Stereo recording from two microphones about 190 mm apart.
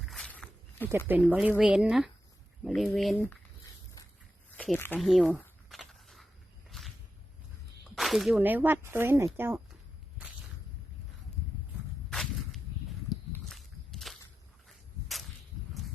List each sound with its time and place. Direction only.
0.0 s walk: centre (ahead or behind)
0.9 s speech: 10° right (ahead or behind); by 3.3 s 5° left (ahead or behind)
4.9 s speech: centre (ahead or behind)
5.6 s walk: centre (ahead or behind)
6.7 s a sound: centre (ahead or behind)
7.9 s speech: centre (ahead or behind)
12.1 s walk: centre (ahead or behind)
15.0 s whip: centre (ahead or behind)